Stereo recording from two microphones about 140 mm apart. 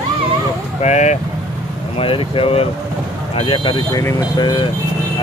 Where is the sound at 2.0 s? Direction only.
40° left (ahead or behind).